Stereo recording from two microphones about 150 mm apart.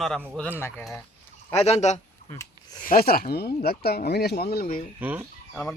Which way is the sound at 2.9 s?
90° left.